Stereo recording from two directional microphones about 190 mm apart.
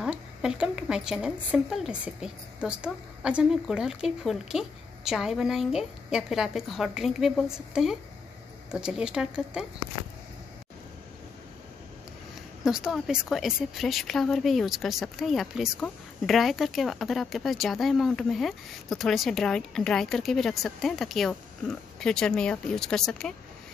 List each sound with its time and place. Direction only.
0.0 s speech: 5° right (ahead or behind)
12.6 s speech: 5° right (ahead or behind)